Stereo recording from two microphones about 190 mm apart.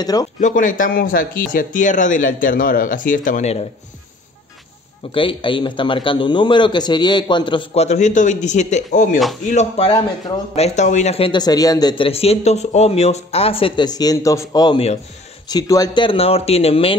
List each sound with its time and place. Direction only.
0.0 s a man's voice: 20° left (ahead or behind)
0.4 s speech: 45° left (ahead or behind)
5.1 s a man's voice: 25° left (ahead or behind)